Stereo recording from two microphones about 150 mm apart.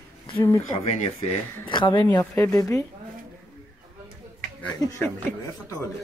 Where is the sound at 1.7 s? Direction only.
30° left (ahead or behind).